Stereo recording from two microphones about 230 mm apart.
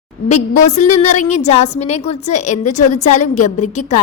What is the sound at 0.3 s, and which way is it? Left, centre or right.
A woman's voice, left.